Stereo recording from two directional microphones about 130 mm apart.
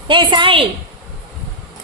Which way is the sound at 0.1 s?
40° right (ahead or behind).